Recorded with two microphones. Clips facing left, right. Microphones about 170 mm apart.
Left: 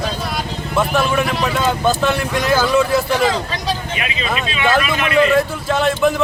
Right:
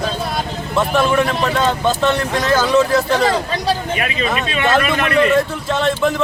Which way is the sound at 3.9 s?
50° right (ahead or behind).